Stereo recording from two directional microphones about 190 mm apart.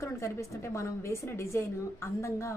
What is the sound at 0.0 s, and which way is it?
A woman's voice, 15° left (ahead or behind).